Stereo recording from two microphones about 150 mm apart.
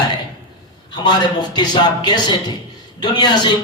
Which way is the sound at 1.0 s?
30° left (ahead or behind).